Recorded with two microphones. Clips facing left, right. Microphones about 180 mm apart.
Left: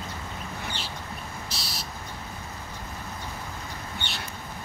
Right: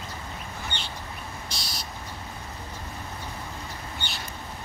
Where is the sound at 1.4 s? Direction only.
Centre (ahead or behind).